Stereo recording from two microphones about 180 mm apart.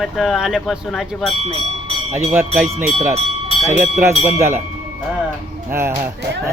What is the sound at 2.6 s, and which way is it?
Speech, 40° right (ahead or behind).